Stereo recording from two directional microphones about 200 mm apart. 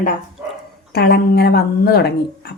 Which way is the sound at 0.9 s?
50° left (ahead or behind).